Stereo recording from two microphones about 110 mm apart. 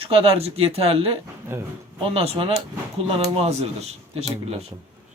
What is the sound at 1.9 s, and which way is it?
Speech, 60° right (ahead or behind).